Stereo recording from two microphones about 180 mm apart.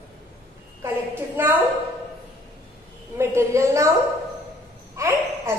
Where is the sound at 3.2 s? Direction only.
15° right (ahead or behind).